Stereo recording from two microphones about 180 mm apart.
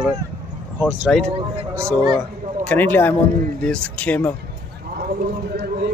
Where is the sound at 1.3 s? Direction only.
35° right (ahead or behind).